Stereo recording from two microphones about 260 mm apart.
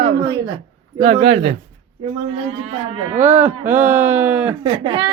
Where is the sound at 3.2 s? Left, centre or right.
Centre.